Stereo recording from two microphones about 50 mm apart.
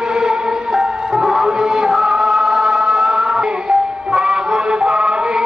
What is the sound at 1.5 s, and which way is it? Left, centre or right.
Chant, centre.